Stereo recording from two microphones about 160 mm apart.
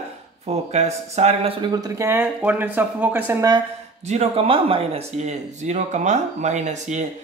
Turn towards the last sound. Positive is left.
turn(degrees=-45)  # may be behind; listen again after turning